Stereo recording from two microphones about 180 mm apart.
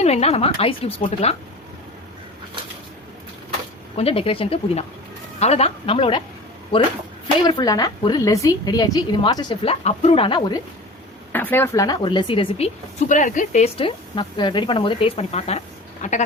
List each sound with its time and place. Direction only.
0.0 s speech: 35° left (ahead or behind)
3.9 s speech: 30° left (ahead or behind)
7.4 s a woman's voice: 20° left (ahead or behind)
11.3 s a woman's voice: 10° left (ahead or behind); by 16.2 s 40° left (ahead or behind)